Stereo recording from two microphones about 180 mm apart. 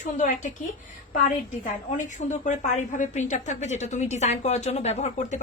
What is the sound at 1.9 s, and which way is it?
A woman's voice, 40° left (ahead or behind).